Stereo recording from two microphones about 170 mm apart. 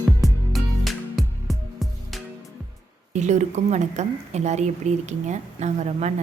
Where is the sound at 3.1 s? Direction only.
45° right (ahead or behind).